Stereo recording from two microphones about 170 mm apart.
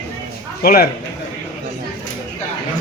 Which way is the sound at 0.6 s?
65° left (ahead or behind).